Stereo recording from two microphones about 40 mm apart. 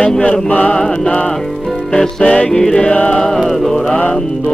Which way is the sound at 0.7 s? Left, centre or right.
Left.